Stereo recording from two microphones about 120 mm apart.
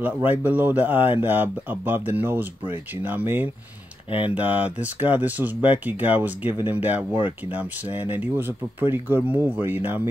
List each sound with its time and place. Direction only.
0.0 s speech: 15° right (ahead or behind)